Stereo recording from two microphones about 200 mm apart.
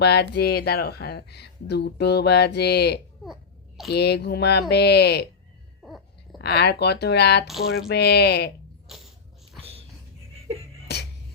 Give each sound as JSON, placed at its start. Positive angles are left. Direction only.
{"t": 0.0, "sound": "speech", "side_deg": 55}
{"t": 5.8, "sound": "a sound", "side_deg": 0}
{"t": 6.4, "sound": "speech", "side_deg": 55}
{"t": 8.9, "sound": "mechanisms", "side_deg": 0}